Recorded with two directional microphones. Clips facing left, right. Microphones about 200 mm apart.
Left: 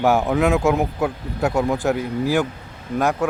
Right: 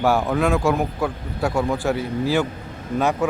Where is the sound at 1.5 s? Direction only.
20° left (ahead or behind).